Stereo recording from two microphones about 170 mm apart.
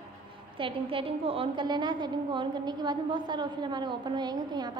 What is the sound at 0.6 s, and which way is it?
A woman's voice, 30° right (ahead or behind).